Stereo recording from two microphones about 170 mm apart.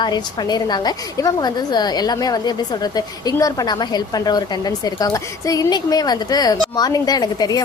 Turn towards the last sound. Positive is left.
turn(degrees=20)  # may be behind; listen again after turning